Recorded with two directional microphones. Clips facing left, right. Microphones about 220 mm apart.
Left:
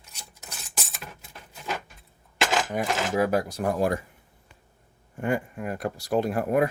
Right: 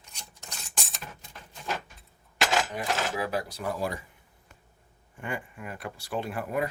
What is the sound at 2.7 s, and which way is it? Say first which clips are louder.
Speech: left 5 dB; 45° left (ahead or behind).